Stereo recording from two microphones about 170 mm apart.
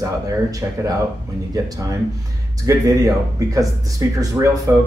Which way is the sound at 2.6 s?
20° right (ahead or behind).